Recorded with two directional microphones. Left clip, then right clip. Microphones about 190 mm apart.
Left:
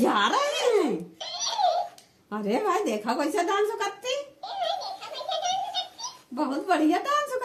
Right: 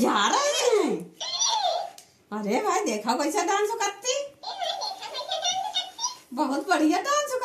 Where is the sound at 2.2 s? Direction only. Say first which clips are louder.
Even; 25° left (ahead or behind).